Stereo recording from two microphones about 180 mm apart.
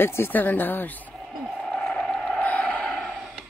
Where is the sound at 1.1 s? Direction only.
Centre (ahead or behind).